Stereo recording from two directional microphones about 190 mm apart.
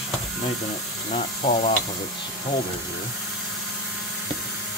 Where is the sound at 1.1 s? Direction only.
35° left (ahead or behind).